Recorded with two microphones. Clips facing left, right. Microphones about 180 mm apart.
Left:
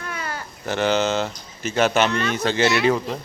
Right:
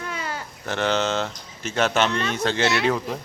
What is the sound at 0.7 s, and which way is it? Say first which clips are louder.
A man's voice: left 3 dB; centre (ahead or behind).